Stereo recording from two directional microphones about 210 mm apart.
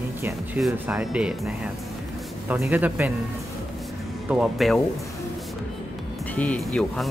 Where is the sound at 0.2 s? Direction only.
10° right (ahead or behind).